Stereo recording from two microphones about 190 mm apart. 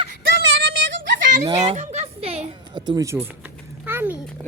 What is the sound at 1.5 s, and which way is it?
Speech, 40° right (ahead or behind).